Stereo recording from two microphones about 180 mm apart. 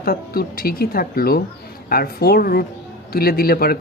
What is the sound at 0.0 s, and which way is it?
Speech, 55° left (ahead or behind).